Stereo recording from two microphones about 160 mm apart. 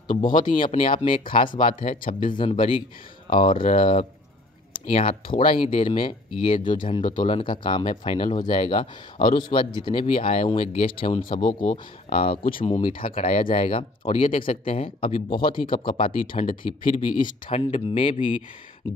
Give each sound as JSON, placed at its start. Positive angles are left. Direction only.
{"t": 0.2, "sound": "speech", "side_deg": 55}
{"t": 0.6, "sound": "speech", "side_deg": 35}
{"t": 2.0, "sound": "speech", "side_deg": 60}
{"t": 2.3, "sound": "speech", "side_deg": 30}
{"t": 3.5, "sound": "speech", "side_deg": 55}
{"t": 3.8, "sound": "speech", "side_deg": 35}
{"t": 5.4, "sound": "speech", "side_deg": 60}
{"t": 5.8, "sound": "speech", "side_deg": 30}